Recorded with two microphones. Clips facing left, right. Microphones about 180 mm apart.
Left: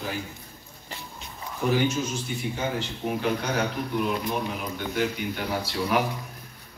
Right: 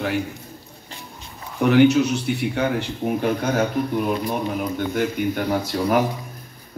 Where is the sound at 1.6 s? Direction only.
70° right (ahead or behind).